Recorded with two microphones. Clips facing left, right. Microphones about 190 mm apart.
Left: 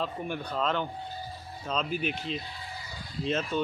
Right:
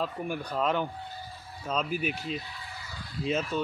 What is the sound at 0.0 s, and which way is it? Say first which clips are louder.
Speech: right 1 dB; 10° right (ahead or behind).